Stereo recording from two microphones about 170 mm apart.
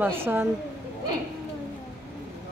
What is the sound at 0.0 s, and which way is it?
Speech, 15° right (ahead or behind).